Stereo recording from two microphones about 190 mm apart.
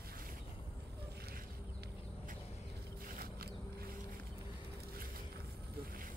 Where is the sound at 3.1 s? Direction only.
55° right (ahead or behind).